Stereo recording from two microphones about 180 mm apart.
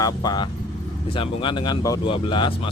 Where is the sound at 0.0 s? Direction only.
20° left (ahead or behind).